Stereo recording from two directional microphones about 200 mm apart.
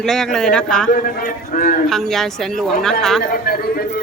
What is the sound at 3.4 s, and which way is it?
Speech, 50° left (ahead or behind).